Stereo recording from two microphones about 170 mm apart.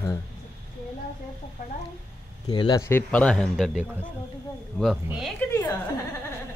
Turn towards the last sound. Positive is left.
turn(degrees=15)  # may be behind; listen again after turning